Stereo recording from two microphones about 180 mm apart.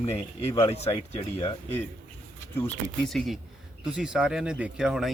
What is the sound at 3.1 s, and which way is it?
Speech, centre (ahead or behind).